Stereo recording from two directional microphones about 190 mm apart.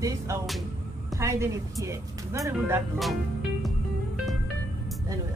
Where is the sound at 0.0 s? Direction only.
15° right (ahead or behind).